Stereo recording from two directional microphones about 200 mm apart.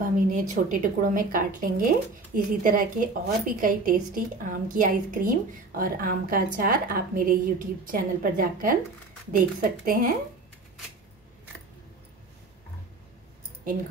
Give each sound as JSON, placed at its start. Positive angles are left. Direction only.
{"t": 0.3, "sound": "a woman's voice", "side_deg": -40}